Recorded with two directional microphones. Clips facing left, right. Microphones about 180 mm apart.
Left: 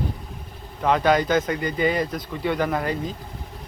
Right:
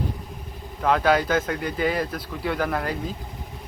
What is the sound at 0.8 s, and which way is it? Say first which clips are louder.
Speech: left 1 dB; centre (ahead or behind).